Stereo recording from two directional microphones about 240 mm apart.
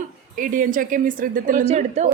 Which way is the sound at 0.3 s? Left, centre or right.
Right.